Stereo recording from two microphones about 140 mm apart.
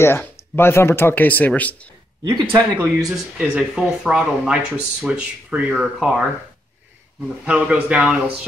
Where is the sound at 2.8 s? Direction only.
5° right (ahead or behind).